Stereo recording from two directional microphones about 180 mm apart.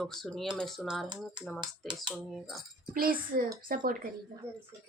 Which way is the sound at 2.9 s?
55° right (ahead or behind).